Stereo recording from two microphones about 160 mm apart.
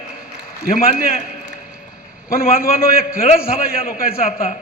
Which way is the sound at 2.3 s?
65° left (ahead or behind).